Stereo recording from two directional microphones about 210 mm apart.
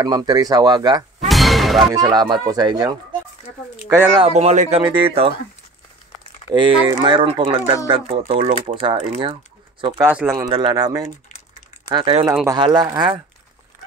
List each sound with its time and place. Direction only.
0.0 s speech: 20° right (ahead or behind)
1.2 s music: centre (ahead or behind)
2.0 s speech: 20° right (ahead or behind)
4.3 s speech: 30° right (ahead or behind)
6.5 s speech: 20° right (ahead or behind)
10.0 s speech: 10° right (ahead or behind)